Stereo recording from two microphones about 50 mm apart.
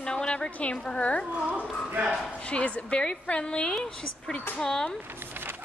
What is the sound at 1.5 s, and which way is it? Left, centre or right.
Speech, right.